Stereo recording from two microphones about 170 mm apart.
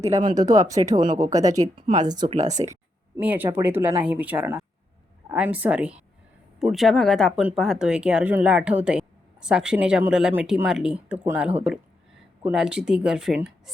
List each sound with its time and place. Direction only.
0.2 s speech: 25° right (ahead or behind)
1.6 s speech: 40° right (ahead or behind)
3.2 s speech: 10° right (ahead or behind)